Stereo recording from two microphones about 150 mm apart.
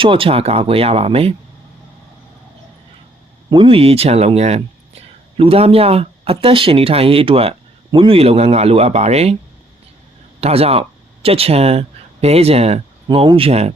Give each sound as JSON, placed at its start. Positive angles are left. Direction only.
{"t": 0.0, "sound": "speech", "side_deg": -35}
{"t": 3.5, "sound": "speech", "side_deg": -35}
{"t": 10.4, "sound": "speech", "side_deg": -40}